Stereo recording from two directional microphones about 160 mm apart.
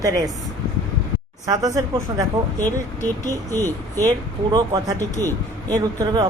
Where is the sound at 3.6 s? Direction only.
25° right (ahead or behind).